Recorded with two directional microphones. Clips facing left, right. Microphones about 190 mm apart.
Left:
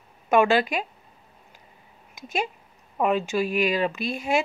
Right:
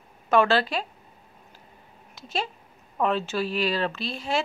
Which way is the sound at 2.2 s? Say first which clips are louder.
Left 2 dB; 15° left (ahead or behind).